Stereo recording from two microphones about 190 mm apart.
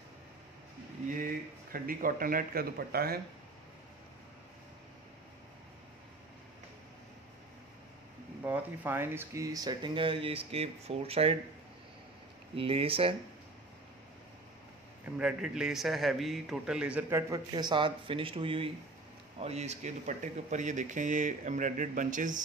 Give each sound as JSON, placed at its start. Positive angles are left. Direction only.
{"t": 1.7, "sound": "speech", "side_deg": -50}
{"t": 8.5, "sound": "speech", "side_deg": -10}
{"t": 12.5, "sound": "speech", "side_deg": -30}
{"t": 15.1, "sound": "a man's voice", "side_deg": -5}
{"t": 17.3, "sound": "speech", "side_deg": -20}